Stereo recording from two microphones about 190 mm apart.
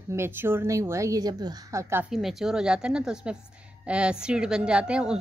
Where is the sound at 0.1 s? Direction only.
10° right (ahead or behind).